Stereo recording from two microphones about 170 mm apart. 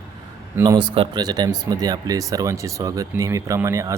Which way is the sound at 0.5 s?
20° right (ahead or behind).